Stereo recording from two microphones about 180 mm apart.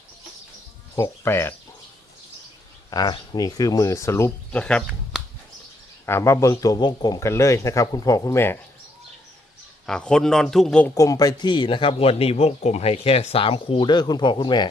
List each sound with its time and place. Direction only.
0.9 s a man's voice: 15° left (ahead or behind)
2.9 s a man's voice: 20° left (ahead or behind)
6.1 s a man's voice: 15° left (ahead or behind)
9.8 s a man's voice: 5° left (ahead or behind)
10.9 s a man's voice: 20° left (ahead or behind)